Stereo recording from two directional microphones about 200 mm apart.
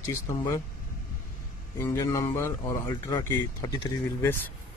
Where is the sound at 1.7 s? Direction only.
15° left (ahead or behind).